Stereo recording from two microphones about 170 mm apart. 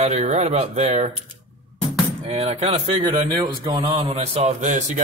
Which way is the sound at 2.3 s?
40° right (ahead or behind).